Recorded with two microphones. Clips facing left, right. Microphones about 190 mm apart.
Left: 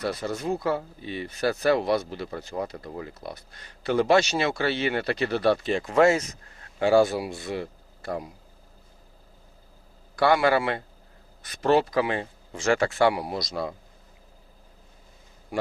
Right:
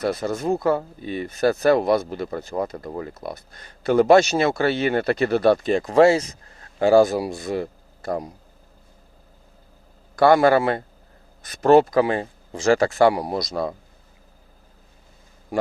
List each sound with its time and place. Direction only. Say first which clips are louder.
0.0 s speech: right 5 dB; 45° right (ahead or behind)
10.2 s speech: right 6 dB; 45° right (ahead or behind)